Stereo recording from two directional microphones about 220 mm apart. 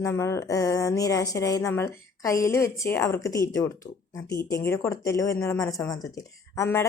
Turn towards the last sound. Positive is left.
turn(degrees=15)  # may be behind; listen again after turning